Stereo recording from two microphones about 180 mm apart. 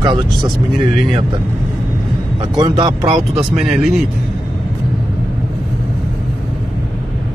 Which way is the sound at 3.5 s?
Centre (ahead or behind).